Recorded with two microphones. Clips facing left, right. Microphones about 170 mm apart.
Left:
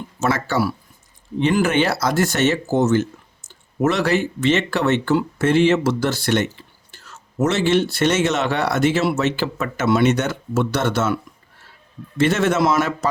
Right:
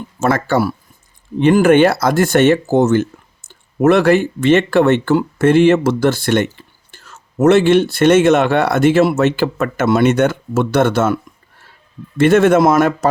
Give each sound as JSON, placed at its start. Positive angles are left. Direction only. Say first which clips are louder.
{"t": 0.2, "sound": "speech", "louder": "right 5 dB", "side_deg": -50}